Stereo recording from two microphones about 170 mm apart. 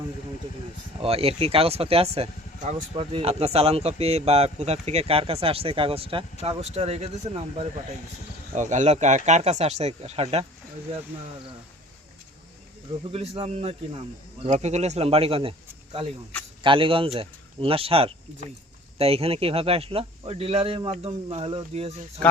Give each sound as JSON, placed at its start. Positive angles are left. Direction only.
{"t": 0.9, "sound": "speech", "side_deg": -35}
{"t": 13.1, "sound": "speech", "side_deg": -35}